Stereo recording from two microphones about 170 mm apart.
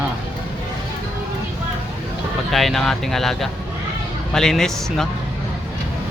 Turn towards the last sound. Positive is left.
turn(degrees=0)  # may be behind; listen again after turning